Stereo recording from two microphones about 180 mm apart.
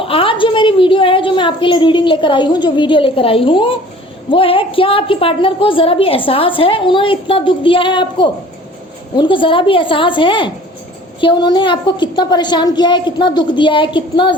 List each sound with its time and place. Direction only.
0.0 s a woman's voice: 30° left (ahead or behind)